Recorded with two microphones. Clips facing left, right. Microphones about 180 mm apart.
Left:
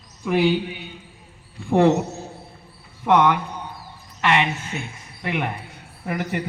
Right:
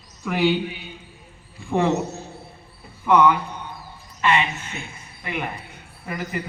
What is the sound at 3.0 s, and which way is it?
A woman's voice, 75° left (ahead or behind).